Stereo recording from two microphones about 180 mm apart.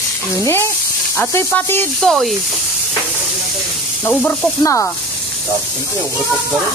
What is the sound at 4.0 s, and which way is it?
Speech, 10° left (ahead or behind).